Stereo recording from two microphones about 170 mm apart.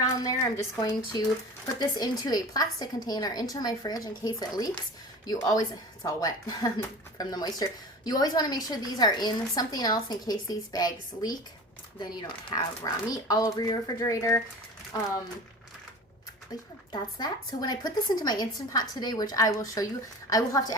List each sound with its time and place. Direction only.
0.0 s a woman's voice: 20° left (ahead or behind)
16.9 s a woman's voice: 25° left (ahead or behind)